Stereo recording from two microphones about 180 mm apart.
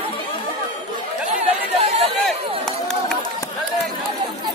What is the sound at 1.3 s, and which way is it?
Chatter, 35° right (ahead or behind).